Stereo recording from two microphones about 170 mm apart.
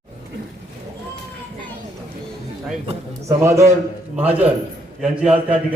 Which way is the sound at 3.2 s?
15° right (ahead or behind).